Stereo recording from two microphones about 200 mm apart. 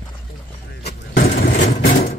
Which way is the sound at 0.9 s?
45° left (ahead or behind).